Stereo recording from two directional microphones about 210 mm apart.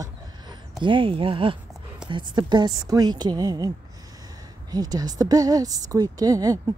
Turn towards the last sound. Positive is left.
turn(degrees=-15)  # may be behind; listen again after turning